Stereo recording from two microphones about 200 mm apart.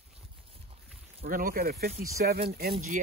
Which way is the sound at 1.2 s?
45° right (ahead or behind).